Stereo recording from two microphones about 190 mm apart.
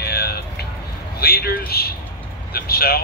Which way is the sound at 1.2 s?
55° left (ahead or behind).